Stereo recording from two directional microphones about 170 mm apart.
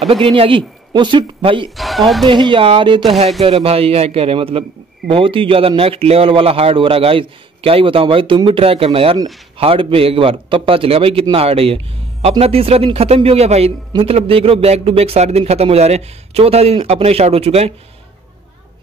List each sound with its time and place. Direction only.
0.1 s speech: 30° right (ahead or behind)
1.8 s chuckle: centre (ahead or behind)
2.2 s speech: 30° right (ahead or behind)